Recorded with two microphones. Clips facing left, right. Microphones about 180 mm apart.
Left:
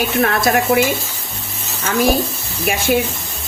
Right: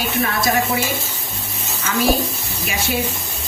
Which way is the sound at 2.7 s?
55° left (ahead or behind).